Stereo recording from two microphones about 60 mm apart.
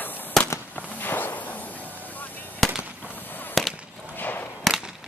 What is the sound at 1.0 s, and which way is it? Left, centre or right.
Whip, left.